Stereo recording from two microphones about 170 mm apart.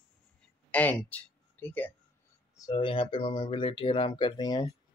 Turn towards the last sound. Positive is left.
turn(degrees=25)  # may be behind; listen again after turning